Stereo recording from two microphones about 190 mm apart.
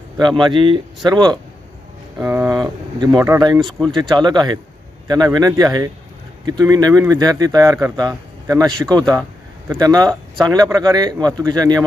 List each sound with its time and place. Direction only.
0.4 s speech: 25° right (ahead or behind)
2.1 s speech: 10° right (ahead or behind)
3.6 s speech: centre (ahead or behind)
4.1 s speech: 20° right (ahead or behind)